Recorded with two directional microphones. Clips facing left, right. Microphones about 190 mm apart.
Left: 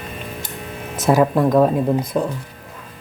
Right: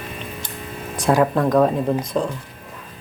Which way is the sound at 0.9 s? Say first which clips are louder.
Left 2 dB; 5° left (ahead or behind).